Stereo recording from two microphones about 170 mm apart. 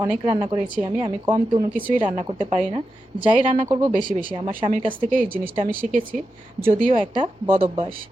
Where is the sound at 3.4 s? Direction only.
45° right (ahead or behind).